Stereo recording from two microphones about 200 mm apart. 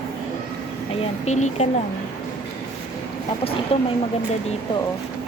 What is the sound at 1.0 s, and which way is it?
Speech, 35° left (ahead or behind).